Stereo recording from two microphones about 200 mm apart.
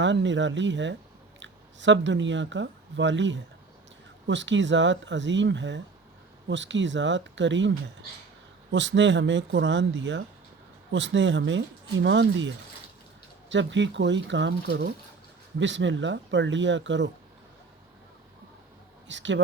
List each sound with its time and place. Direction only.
0.0 s speech: 65° right (ahead or behind)
8.7 s speech: 65° right (ahead or behind)
13.5 s speech: 65° right (ahead or behind)
19.0 s speech: 65° right (ahead or behind)